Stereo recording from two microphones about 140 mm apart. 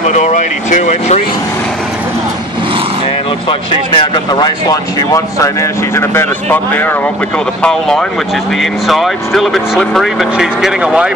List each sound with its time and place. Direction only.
0.1 s speech: 55° left (ahead or behind)
3.4 s speech: 35° left (ahead or behind); by 7.0 s 15° left (ahead or behind)
8.5 s speech: centre (ahead or behind)